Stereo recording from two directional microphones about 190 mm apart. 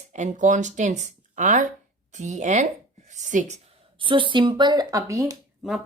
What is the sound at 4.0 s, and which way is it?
Speech, 25° right (ahead or behind).